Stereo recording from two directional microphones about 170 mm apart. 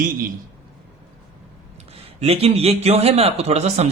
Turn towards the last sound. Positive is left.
turn(degrees=-40)  # may be behind; listen again after turning